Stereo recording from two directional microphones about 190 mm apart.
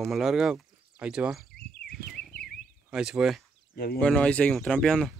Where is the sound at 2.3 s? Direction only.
50° left (ahead or behind).